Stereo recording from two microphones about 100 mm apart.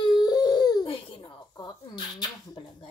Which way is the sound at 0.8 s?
60° left (ahead or behind).